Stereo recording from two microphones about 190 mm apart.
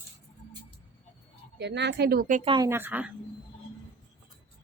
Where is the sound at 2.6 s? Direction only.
10° right (ahead or behind).